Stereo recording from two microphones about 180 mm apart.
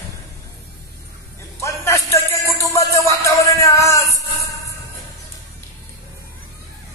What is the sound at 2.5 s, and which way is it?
Music, 20° left (ahead or behind).